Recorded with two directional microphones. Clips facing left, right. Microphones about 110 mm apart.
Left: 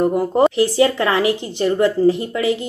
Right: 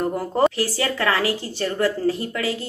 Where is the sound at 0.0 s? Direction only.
15° left (ahead or behind).